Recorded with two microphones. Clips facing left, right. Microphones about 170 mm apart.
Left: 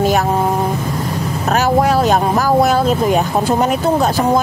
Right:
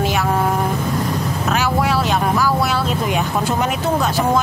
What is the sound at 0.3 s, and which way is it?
Vehicle, 20° left (ahead or behind).